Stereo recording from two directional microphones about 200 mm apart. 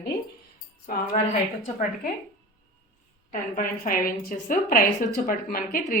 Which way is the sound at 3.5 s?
45° left (ahead or behind).